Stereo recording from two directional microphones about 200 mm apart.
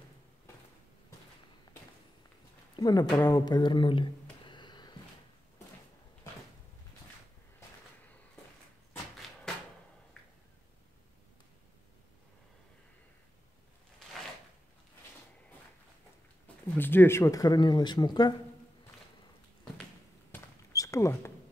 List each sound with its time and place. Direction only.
2.7 s speech: 20° left (ahead or behind)
16.7 s speech: 10° left (ahead or behind)
20.2 s a sound: 15° left (ahead or behind)